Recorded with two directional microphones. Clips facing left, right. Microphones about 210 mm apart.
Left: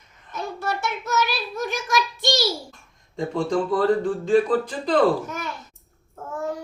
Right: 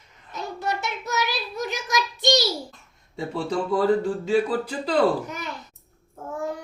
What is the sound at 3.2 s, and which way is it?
Speech, 5° right (ahead or behind).